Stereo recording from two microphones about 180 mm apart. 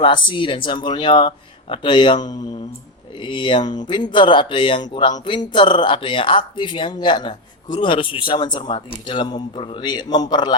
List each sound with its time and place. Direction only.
0.0 s speech: 25° left (ahead or behind)